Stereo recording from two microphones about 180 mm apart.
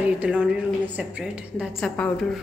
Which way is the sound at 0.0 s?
5° right (ahead or behind).